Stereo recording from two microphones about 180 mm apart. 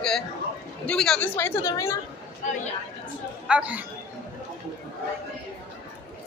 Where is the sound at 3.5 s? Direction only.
10° right (ahead or behind).